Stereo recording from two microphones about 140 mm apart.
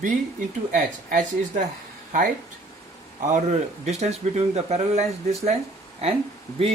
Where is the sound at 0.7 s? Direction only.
65° right (ahead or behind).